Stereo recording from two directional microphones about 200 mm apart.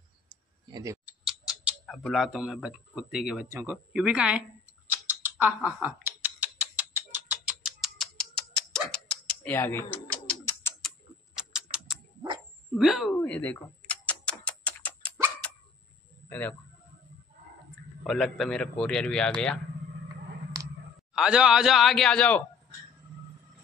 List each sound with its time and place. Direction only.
0.3 s clicking: 20° right (ahead or behind)
1.0 s speech: 5° right (ahead or behind)
3.4 s a man's voice: 15° right (ahead or behind)
4.8 s typing: 10° right (ahead or behind); by 10.9 s 10° left (ahead or behind)
11.3 s a sound: 5° right (ahead or behind)
12.7 s typing: centre (ahead or behind)
16.3 s speech: 10° left (ahead or behind)
18.0 s a man's voice: centre (ahead or behind)
21.1 s a man's voice: 5° right (ahead or behind)